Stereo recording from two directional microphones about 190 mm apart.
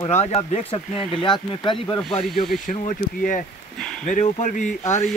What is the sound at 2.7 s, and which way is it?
Speech, 40° left (ahead or behind).